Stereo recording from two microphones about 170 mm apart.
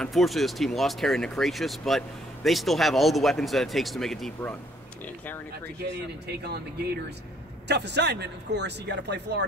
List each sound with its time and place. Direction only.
0.0 s speech: centre (ahead or behind)
6.2 s speech: 70° right (ahead or behind)
7.6 s a man's voice: 85° right